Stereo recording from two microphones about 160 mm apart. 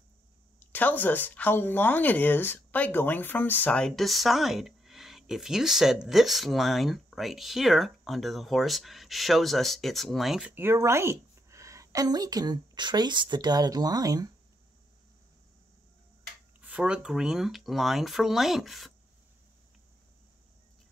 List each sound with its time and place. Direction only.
0.6 s speech: 10° left (ahead or behind)
10.5 s a woman's voice: 15° right (ahead or behind)
16.6 s speech: 5° right (ahead or behind)